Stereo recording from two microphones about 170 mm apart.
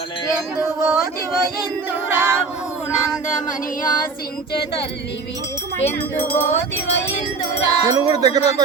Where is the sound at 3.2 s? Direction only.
50° left (ahead or behind).